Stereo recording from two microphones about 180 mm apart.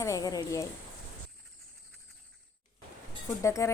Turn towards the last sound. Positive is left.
turn(degrees=15)  # may be behind; listen again after turning